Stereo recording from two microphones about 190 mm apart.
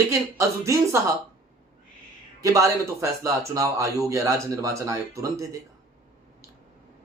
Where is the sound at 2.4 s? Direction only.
15° right (ahead or behind).